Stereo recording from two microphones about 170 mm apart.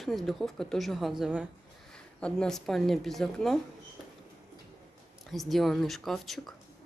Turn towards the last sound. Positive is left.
turn(degrees=0)  # may be behind; listen again after turning